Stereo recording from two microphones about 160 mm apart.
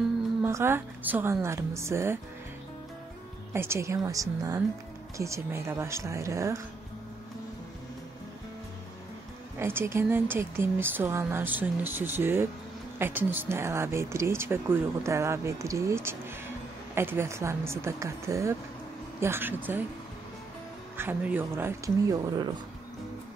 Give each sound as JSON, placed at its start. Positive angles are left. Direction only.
{"t": 0.4, "sound": "speech", "side_deg": -15}
{"t": 3.5, "sound": "speech", "side_deg": -15}
{"t": 9.6, "sound": "speech", "side_deg": -15}
{"t": 21.0, "sound": "speech", "side_deg": -10}